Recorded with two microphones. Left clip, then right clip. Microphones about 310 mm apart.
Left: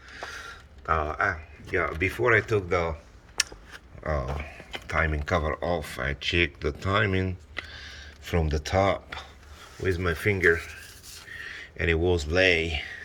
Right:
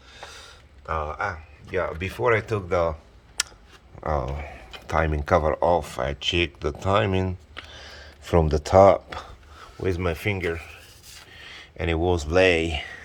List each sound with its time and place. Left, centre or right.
0.9 s speech: centre
1.7 s speech: centre
3.4 s a sound: centre
4.0 s speech: centre
7.8 s a sound: centre
8.4 s speech: centre